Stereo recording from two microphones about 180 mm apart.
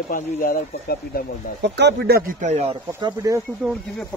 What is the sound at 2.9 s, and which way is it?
Speech, 15° right (ahead or behind).